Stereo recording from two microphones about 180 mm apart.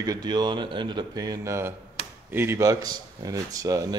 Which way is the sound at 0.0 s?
20° right (ahead or behind).